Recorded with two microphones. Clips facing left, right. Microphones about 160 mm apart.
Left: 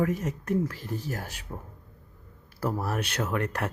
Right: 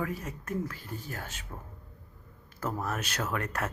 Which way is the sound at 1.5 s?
20° left (ahead or behind).